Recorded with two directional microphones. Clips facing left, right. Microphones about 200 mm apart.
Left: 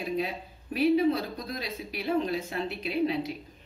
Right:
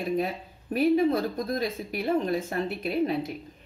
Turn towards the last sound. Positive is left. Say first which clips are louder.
# right 2 dB
turn(degrees=-50)  # may be behind; listen again after turning